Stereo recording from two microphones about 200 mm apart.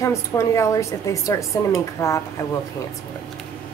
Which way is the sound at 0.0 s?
15° left (ahead or behind).